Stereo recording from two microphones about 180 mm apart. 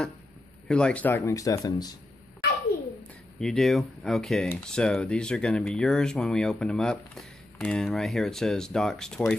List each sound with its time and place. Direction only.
0.7 s speech: 5° left (ahead or behind); by 2.0 s 20° left (ahead or behind)
3.3 s speech: 5° left (ahead or behind)